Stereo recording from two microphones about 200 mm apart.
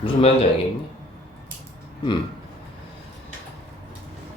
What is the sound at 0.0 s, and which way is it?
Speech, 30° left (ahead or behind).